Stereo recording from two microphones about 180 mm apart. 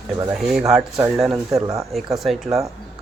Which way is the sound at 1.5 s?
20° right (ahead or behind).